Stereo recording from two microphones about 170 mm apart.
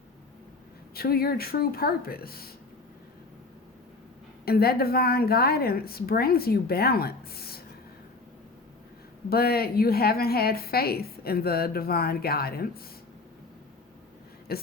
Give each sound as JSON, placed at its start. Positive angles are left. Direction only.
{"t": 0.9, "sound": "a woman's voice", "side_deg": 65}
{"t": 4.4, "sound": "a woman's voice", "side_deg": 65}
{"t": 9.3, "sound": "a woman's voice", "side_deg": 65}
{"t": 14.5, "sound": "a woman's voice", "side_deg": 65}